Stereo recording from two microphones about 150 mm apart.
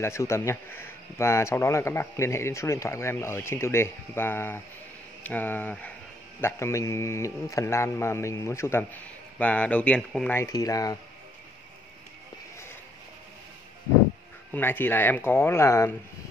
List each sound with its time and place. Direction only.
0.0 s speech: 20° left (ahead or behind)
10.4 s speech: 20° left (ahead or behind)
14.5 s speech: 15° left (ahead or behind)